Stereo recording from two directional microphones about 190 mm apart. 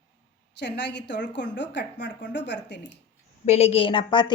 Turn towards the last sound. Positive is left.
turn(degrees=25)  # may be behind; listen again after turning